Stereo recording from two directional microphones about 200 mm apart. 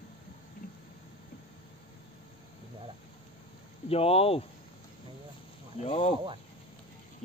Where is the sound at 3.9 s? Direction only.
30° left (ahead or behind).